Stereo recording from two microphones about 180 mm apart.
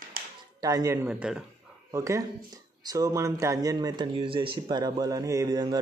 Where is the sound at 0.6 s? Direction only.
20° right (ahead or behind).